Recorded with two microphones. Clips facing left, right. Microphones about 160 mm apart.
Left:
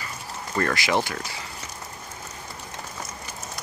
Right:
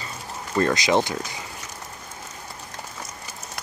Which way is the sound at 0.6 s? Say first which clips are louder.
Right 4 dB; 20° right (ahead or behind).